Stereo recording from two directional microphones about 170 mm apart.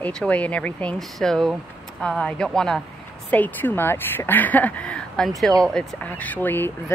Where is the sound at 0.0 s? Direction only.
5° left (ahead or behind).